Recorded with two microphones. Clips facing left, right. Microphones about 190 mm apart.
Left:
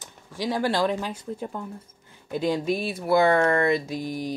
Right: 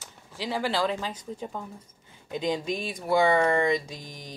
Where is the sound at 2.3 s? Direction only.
10° left (ahead or behind).